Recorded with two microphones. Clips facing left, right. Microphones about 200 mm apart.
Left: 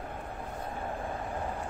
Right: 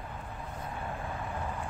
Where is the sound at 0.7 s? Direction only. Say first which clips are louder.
Left 2 dB; 30° left (ahead or behind).